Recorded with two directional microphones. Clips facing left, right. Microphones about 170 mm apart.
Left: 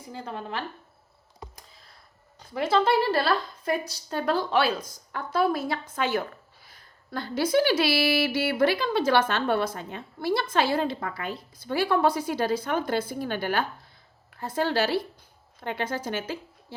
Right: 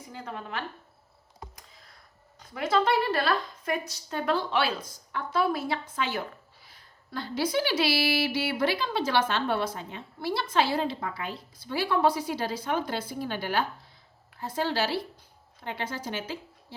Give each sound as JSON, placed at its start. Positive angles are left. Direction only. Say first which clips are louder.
{"t": 0.1, "sound": "a woman's voice", "louder": "left 3 dB", "side_deg": 30}
{"t": 1.5, "sound": "a sound", "louder": "left 1 dB", "side_deg": 30}
{"t": 2.4, "sound": "a woman's voice", "louder": "left 2 dB", "side_deg": 30}